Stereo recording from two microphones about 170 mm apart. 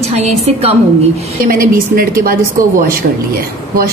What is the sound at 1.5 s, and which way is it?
A woman's voice, 60° right (ahead or behind).